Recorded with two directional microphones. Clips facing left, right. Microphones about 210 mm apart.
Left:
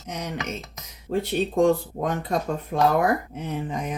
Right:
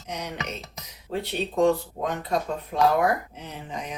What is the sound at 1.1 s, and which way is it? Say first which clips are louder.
Speech: left 4 dB; 45° left (ahead or behind).